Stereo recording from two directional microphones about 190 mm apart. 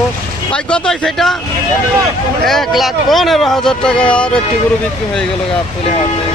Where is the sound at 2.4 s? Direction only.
Centre (ahead or behind).